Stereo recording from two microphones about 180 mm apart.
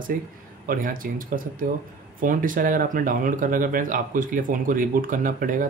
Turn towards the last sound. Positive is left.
turn(degrees=-50)  # may be behind; listen again after turning